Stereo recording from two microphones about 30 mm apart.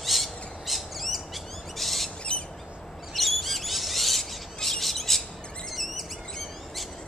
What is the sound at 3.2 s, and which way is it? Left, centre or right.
Bird, centre.